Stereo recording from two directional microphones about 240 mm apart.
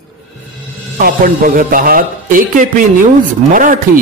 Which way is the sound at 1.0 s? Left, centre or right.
Right.